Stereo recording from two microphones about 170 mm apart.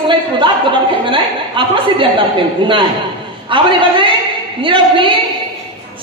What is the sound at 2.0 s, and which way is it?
A woman's voice, 30° right (ahead or behind).